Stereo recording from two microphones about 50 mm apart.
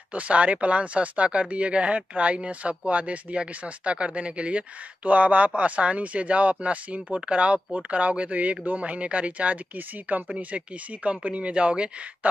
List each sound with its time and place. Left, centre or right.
0.1 s speech: right